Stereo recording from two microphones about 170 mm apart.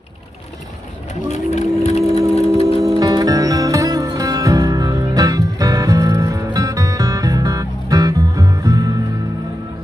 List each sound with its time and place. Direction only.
1.3 s vehicle: 40° left (ahead or behind)
2.8 s music: 20° right (ahead or behind)